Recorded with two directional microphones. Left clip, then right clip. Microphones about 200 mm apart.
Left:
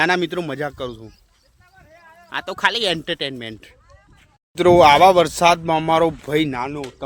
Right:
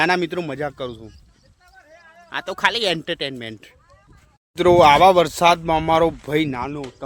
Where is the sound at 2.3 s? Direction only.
Centre (ahead or behind).